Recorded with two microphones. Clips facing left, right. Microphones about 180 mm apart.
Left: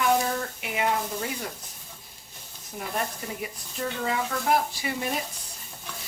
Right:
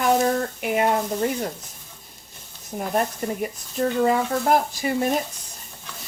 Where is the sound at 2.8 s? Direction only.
50° right (ahead or behind).